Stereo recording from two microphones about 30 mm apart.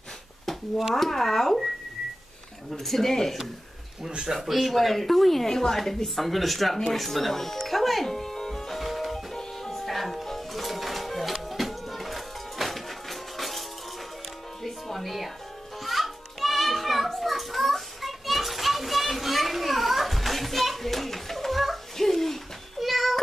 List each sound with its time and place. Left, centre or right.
0.9 s speech: centre
2.7 s speech: centre
4.3 s speech: centre
6.0 s speech: centre
8.7 s music: centre
9.3 s music: centre
15.8 s children playing: centre
21.9 s a sound: centre
22.8 s cat: centre